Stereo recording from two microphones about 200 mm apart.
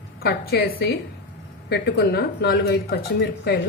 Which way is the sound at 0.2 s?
50° left (ahead or behind).